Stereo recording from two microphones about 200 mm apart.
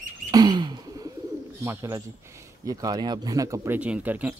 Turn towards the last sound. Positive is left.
turn(degrees=-5)  # may be behind; listen again after turning